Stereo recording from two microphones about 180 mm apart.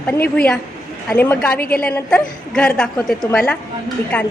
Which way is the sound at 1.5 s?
55° left (ahead or behind).